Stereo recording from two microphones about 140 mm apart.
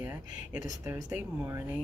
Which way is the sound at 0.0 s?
15° right (ahead or behind).